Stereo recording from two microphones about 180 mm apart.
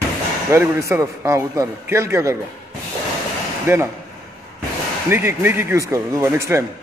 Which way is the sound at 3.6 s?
10° right (ahead or behind).